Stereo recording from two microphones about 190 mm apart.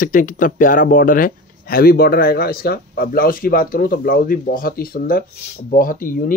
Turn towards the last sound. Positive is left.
turn(degrees=45)  # may be behind; listen again after turning